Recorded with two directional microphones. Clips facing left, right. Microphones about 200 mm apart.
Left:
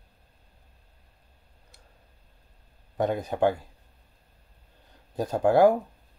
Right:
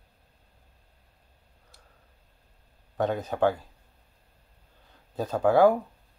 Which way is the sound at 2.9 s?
15° left (ahead or behind).